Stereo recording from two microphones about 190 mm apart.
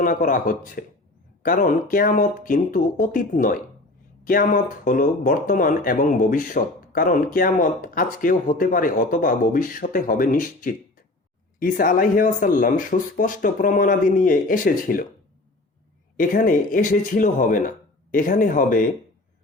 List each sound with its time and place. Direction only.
0.0 s speech: 45° left (ahead or behind)
16.1 s speech: 45° left (ahead or behind)